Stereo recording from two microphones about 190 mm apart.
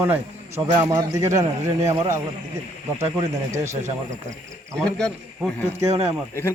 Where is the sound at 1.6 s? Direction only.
35° right (ahead or behind).